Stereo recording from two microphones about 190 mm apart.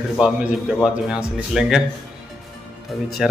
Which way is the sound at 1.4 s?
5° right (ahead or behind).